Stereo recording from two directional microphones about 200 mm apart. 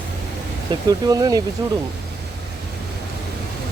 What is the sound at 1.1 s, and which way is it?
Speech, 20° right (ahead or behind).